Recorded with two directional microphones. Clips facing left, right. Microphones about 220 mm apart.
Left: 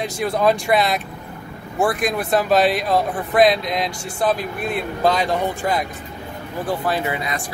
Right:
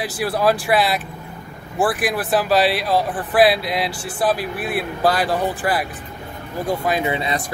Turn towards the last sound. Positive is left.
turn(degrees=-25)  # may be behind; listen again after turning